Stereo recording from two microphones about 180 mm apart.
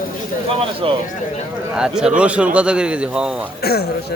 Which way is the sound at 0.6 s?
30° right (ahead or behind).